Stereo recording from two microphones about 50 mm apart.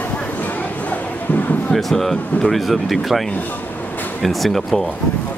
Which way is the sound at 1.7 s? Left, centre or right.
Centre.